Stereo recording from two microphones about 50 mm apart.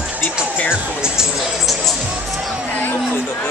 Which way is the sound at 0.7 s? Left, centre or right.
Centre.